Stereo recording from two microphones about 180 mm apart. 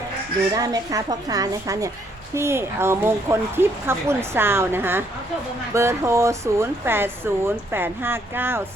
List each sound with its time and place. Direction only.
0.5 s a woman's voice: 20° right (ahead or behind)